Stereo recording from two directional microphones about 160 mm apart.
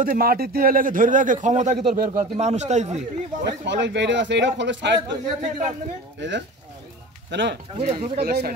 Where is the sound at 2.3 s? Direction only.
45° right (ahead or behind).